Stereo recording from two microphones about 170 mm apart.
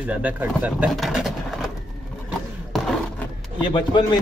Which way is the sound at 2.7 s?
Centre (ahead or behind).